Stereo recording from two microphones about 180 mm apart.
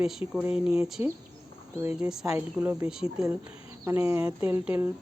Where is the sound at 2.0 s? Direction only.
5° right (ahead or behind).